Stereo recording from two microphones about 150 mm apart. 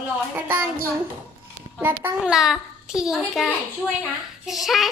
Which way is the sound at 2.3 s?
Centre (ahead or behind).